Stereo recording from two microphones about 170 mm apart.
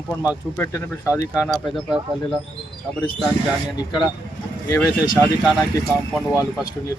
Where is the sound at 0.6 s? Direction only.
15° left (ahead or behind).